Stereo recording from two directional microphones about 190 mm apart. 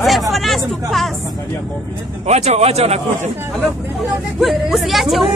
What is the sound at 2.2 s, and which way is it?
A man's voice, 35° right (ahead or behind).